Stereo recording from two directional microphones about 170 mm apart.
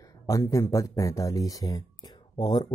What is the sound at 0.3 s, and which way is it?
Speech, 20° left (ahead or behind).